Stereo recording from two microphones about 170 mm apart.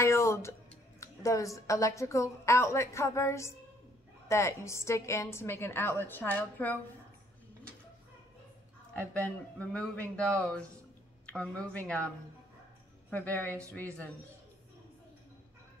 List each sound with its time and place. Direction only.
0.0 s music: 15° left (ahead or behind)
0.9 s a woman's voice: 20° left (ahead or behind)
9.2 s a woman's voice: 5° left (ahead or behind)
13.1 s a woman's voice: 10° left (ahead or behind)